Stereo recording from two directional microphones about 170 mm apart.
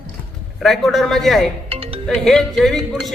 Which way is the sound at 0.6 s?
Centre (ahead or behind).